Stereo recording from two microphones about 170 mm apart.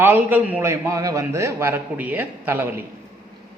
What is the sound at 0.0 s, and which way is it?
A man's voice, 10° right (ahead or behind).